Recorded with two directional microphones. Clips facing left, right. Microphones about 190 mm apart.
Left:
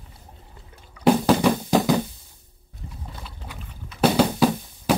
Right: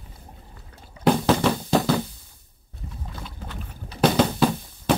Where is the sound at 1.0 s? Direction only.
10° left (ahead or behind).